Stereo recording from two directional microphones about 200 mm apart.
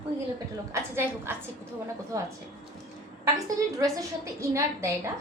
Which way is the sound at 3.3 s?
15° right (ahead or behind).